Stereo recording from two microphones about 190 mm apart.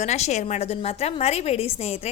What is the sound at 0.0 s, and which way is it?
A woman's voice, 35° left (ahead or behind).